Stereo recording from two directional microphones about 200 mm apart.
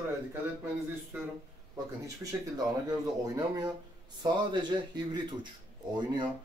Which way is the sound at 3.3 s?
20° right (ahead or behind).